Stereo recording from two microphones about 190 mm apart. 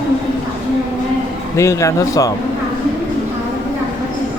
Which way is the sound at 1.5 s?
15° left (ahead or behind).